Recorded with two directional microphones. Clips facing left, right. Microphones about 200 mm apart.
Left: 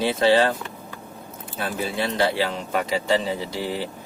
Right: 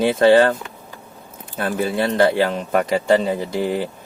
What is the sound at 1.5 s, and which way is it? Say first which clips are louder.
Speech: right 6 dB; 50° right (ahead or behind).